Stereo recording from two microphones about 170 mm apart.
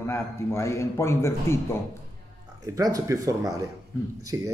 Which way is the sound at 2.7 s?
20° right (ahead or behind).